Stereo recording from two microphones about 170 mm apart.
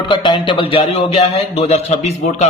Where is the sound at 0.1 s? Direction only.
30° left (ahead or behind).